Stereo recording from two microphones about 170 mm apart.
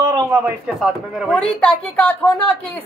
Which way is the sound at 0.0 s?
20° right (ahead or behind).